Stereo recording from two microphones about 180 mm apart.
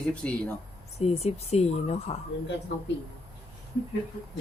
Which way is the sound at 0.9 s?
35° left (ahead or behind).